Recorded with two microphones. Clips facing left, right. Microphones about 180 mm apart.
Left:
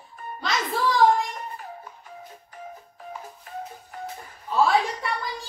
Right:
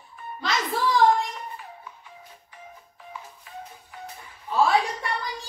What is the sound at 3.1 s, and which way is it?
Music, 45° left (ahead or behind).